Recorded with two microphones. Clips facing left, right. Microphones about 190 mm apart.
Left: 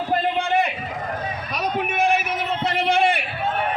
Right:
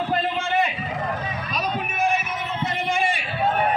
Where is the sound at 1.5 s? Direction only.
75° left (ahead or behind).